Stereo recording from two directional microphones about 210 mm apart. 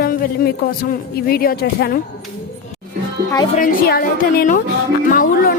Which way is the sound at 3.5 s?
45° left (ahead or behind).